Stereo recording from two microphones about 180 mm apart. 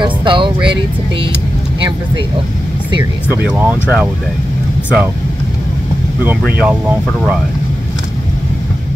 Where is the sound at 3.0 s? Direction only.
10° right (ahead or behind).